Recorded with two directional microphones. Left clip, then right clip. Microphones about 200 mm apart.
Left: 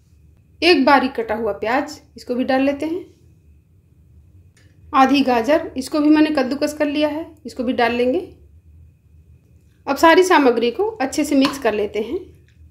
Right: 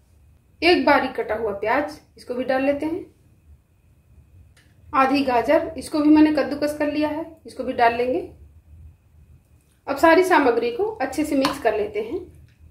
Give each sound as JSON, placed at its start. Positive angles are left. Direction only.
{"t": 0.6, "sound": "a woman's voice", "side_deg": 55}
{"t": 4.8, "sound": "a woman's voice", "side_deg": 55}
{"t": 9.8, "sound": "a woman's voice", "side_deg": 55}